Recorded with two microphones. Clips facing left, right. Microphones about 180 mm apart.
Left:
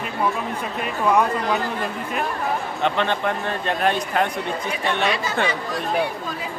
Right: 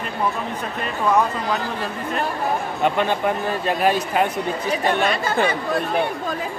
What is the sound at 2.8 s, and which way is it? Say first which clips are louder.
Speech: right 2 dB; 10° right (ahead or behind).